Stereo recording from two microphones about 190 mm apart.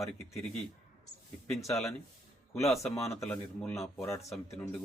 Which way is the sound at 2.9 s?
15° left (ahead or behind).